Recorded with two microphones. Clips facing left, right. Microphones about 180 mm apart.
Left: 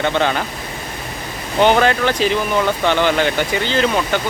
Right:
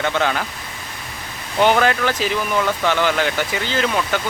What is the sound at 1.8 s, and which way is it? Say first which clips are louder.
Speech: left 3 dB; 5° right (ahead or behind).